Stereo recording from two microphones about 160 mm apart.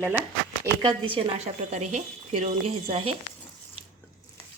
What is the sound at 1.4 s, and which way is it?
Speech, 45° right (ahead or behind).